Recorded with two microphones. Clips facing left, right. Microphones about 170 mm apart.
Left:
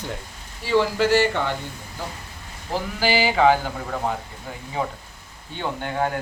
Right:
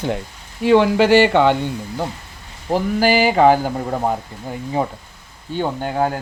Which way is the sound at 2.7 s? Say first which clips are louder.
Right 6 dB; 50° right (ahead or behind).